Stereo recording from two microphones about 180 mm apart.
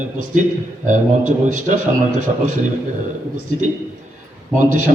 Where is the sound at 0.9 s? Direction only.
45° right (ahead or behind).